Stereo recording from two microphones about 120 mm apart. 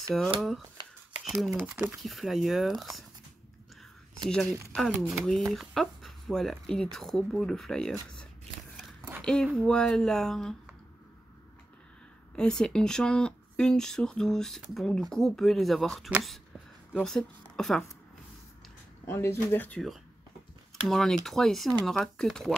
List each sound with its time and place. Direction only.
0.1 s speech: 5° right (ahead or behind)
1.5 s speech: 20° right (ahead or behind)
2.0 s speech: centre (ahead or behind)
4.2 s speech: 5° left (ahead or behind)
9.2 s speech: 5° left (ahead or behind)
12.4 s speech: 5° left (ahead or behind)
16.2 s a sound: 5° right (ahead or behind)
17.0 s a woman's voice: 5° left (ahead or behind)
19.0 s speech: 20° left (ahead or behind)
20.8 s speech: 5° left (ahead or behind)